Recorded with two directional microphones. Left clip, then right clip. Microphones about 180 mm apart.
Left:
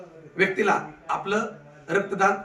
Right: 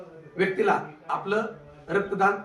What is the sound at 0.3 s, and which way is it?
A man's voice, 15° left (ahead or behind).